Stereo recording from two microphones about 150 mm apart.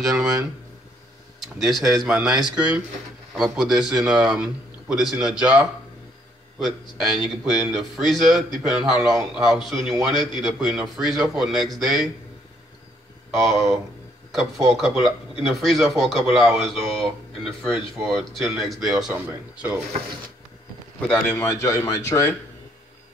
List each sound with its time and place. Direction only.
0.0 s speech: 5° right (ahead or behind)
1.6 s speech: centre (ahead or behind)
6.6 s speech: centre (ahead or behind)
13.3 s speech: centre (ahead or behind)
21.1 s a man's voice: 10° left (ahead or behind)
21.5 s speech: 20° left (ahead or behind)